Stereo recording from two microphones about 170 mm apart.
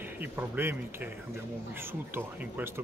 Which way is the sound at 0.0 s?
10° right (ahead or behind).